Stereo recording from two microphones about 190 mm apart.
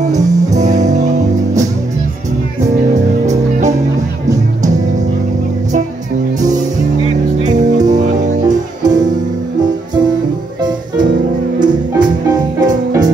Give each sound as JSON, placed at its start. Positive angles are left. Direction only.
{"t": 0.6, "sound": "music", "side_deg": -40}
{"t": 7.4, "sound": "music", "side_deg": -40}
{"t": 8.8, "sound": "music", "side_deg": -20}
{"t": 11.6, "sound": "music", "side_deg": -20}